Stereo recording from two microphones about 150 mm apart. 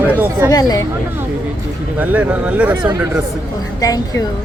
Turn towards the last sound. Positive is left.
turn(degrees=25)  # may be behind; listen again after turning